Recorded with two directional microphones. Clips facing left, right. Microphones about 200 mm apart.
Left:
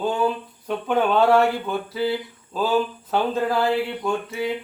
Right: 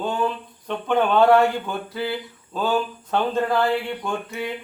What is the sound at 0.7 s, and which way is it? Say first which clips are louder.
Speech: left 2 dB; 5° left (ahead or behind).